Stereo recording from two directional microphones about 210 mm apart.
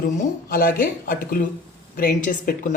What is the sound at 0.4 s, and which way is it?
Speech, 45° left (ahead or behind).